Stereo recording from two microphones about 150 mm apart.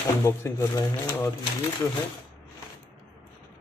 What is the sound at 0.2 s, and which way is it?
Speech, 20° left (ahead or behind).